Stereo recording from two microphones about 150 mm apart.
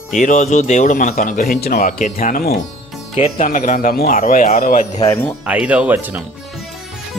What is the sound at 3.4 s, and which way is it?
Speech, 55° left (ahead or behind).